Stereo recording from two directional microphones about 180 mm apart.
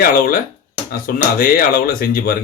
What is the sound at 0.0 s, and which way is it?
Speech, 50° left (ahead or behind).